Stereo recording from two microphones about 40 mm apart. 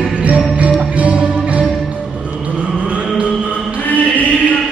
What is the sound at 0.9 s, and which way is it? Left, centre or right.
Music, right.